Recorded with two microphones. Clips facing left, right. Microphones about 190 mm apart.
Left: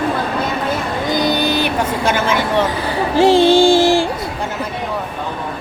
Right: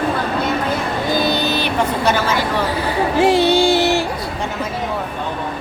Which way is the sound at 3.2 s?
25° left (ahead or behind).